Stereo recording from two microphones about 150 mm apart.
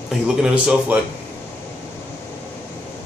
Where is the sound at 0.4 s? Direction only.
5° right (ahead or behind).